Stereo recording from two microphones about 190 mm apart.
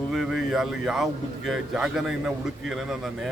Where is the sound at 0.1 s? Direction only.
Centre (ahead or behind).